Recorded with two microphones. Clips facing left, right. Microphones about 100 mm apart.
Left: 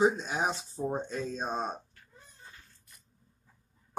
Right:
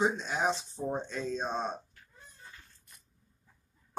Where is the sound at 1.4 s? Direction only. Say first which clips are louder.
Even; 10° left (ahead or behind).